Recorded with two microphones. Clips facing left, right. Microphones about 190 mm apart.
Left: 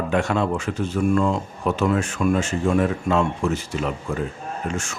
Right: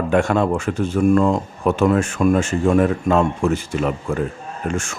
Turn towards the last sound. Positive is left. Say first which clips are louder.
# right 3 dB
turn(degrees=-50)  # may be behind; listen again after turning